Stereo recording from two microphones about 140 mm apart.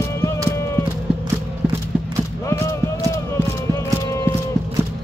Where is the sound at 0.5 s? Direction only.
20° left (ahead or behind).